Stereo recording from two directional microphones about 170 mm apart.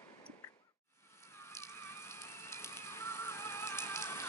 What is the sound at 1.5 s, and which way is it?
Music, 15° left (ahead or behind).